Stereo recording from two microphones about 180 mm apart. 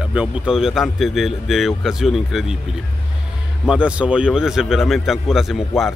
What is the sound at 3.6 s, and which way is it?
Speech, 5° right (ahead or behind).